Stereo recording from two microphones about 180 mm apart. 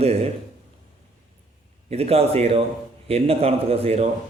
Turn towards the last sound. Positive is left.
turn(degrees=-35)  # may be behind; listen again after turning